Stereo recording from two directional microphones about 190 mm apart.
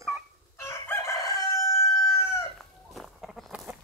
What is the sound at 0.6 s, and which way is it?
Crowing, 15° left (ahead or behind).